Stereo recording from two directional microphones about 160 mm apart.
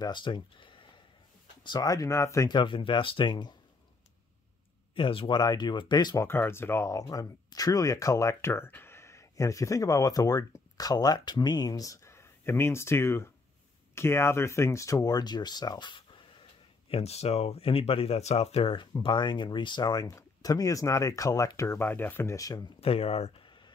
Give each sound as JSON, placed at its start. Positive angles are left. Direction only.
{"t": 0.0, "sound": "speech", "side_deg": 30}
{"t": 4.9, "sound": "speech", "side_deg": 35}
{"t": 6.2, "sound": "speech", "side_deg": 15}
{"t": 16.9, "sound": "speech", "side_deg": 40}
{"t": 22.8, "sound": "a sound", "side_deg": 40}